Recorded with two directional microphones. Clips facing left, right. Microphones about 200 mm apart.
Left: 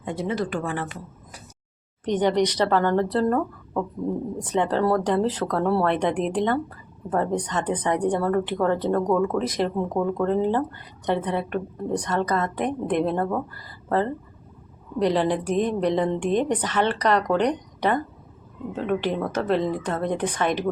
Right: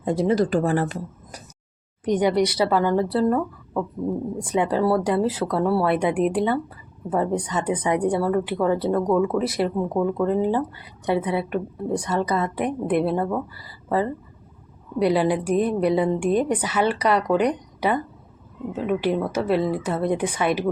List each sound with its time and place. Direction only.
0.0 s speech: 35° right (ahead or behind)
2.0 s speech: 10° right (ahead or behind)